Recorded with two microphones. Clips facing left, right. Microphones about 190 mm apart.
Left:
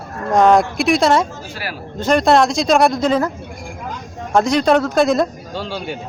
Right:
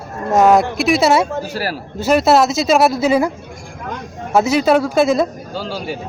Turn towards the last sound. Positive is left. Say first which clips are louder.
# right 1 dB
turn(degrees=0)  # may be behind; listen again after turning